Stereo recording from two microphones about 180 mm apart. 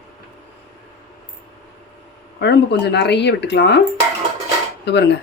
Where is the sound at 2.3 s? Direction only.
70° left (ahead or behind).